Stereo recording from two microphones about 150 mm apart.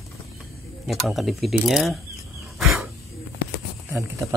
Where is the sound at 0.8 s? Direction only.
Centre (ahead or behind).